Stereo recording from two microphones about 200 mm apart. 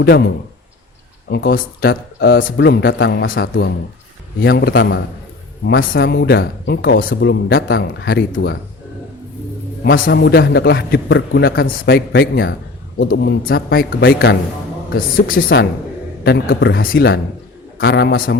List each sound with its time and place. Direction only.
0.0 s a man's voice: 55° left (ahead or behind)
3.5 s a man's voice: 60° left (ahead or behind)
4.4 s speech: 50° left (ahead or behind)
9.8 s a man's voice: 55° left (ahead or behind)
13.0 s speech: 65° left (ahead or behind)
13.4 s speech: 50° left (ahead or behind)